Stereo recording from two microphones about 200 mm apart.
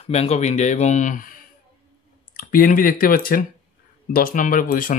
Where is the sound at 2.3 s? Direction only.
45° left (ahead or behind).